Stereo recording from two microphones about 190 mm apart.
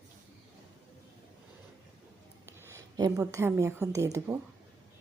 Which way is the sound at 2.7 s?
15° right (ahead or behind).